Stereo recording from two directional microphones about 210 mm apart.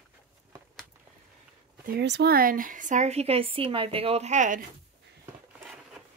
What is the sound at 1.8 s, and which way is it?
A woman's voice, 55° right (ahead or behind).